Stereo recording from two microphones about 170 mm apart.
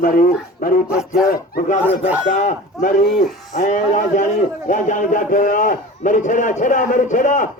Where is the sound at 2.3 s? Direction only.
50° left (ahead or behind).